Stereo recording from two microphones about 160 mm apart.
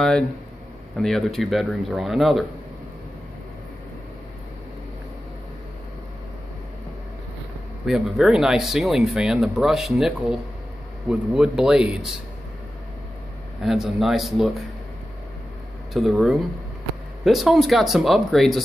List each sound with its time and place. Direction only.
0.0 s speech: 5° left (ahead or behind)
7.8 s speech: centre (ahead or behind)
13.6 s speech: centre (ahead or behind)
15.9 s speech: centre (ahead or behind)